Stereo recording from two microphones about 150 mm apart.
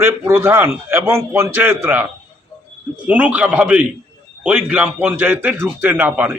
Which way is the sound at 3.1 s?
10° right (ahead or behind).